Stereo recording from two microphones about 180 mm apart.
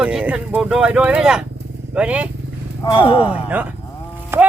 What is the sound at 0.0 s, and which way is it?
Speech, 5° right (ahead or behind).